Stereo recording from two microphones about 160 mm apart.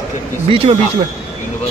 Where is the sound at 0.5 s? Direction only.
35° right (ahead or behind).